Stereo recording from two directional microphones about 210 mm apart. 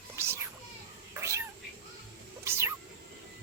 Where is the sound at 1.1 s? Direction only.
15° right (ahead or behind).